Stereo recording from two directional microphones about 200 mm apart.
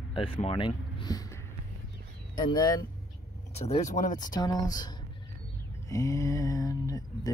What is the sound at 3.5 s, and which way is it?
Speech, 30° left (ahead or behind).